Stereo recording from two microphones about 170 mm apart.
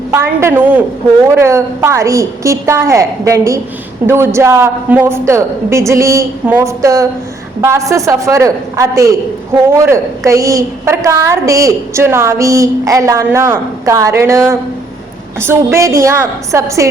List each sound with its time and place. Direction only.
0.1 s a woman's voice: 15° right (ahead or behind)